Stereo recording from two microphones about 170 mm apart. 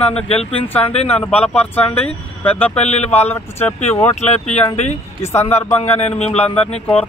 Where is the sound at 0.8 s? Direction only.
35° left (ahead or behind).